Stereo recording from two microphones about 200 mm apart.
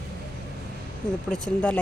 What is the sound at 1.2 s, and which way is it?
Speech, 5° left (ahead or behind).